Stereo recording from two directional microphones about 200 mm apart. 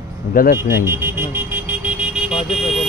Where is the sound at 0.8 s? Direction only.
10° right (ahead or behind).